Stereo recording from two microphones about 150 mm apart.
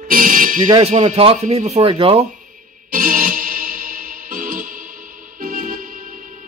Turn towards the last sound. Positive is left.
turn(degrees=-65)  # may be behind; listen again after turning